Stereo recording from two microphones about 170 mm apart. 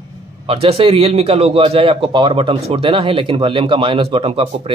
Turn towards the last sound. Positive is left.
turn(degrees=-35)  # may be behind; listen again after turning